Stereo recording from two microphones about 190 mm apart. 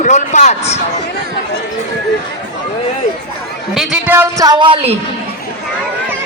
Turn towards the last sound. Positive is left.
turn(degrees=-25)  # may be behind; listen again after turning